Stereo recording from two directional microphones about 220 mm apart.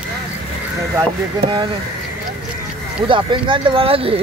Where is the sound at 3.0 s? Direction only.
25° right (ahead or behind).